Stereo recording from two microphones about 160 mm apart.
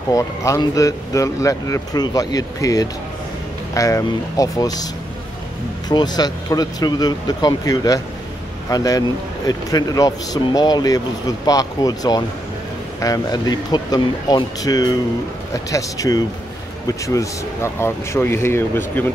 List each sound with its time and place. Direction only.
0.1 s speech: 20° left (ahead or behind)
5.9 s speech: 25° left (ahead or behind)